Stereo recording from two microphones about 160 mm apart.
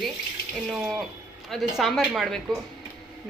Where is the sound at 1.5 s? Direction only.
Centre (ahead or behind).